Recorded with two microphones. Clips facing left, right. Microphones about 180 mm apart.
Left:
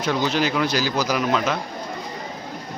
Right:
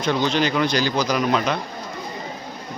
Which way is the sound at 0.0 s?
5° left (ahead or behind).